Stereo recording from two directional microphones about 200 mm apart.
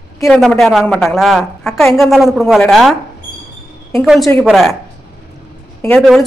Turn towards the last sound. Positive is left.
turn(degrees=5)  # may be behind; listen again after turning